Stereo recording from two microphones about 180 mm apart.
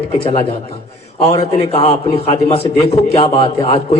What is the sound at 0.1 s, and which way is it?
A man's voice, 30° left (ahead or behind).